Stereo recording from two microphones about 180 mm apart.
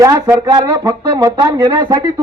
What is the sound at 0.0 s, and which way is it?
Speech, 20° right (ahead or behind).